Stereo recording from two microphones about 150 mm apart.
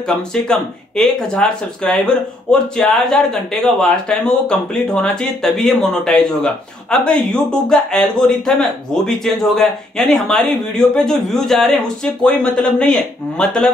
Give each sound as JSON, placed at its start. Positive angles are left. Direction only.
{"t": 0.3, "sound": "speech", "side_deg": 5}